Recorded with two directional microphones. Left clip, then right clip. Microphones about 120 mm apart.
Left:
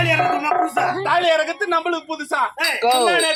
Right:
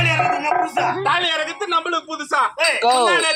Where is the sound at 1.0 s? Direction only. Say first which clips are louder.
Left 2 dB; 50° left (ahead or behind).